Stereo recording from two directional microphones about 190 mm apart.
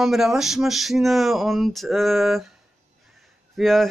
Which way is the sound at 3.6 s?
Centre (ahead or behind).